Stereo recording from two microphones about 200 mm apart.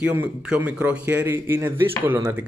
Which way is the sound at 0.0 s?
10° right (ahead or behind).